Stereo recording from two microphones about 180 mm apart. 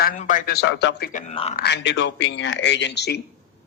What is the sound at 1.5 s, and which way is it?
A man's voice, 65° left (ahead or behind).